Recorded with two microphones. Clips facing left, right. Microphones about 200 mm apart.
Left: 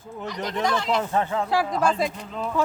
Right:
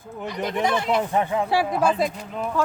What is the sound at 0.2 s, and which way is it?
Speech, 15° right (ahead or behind).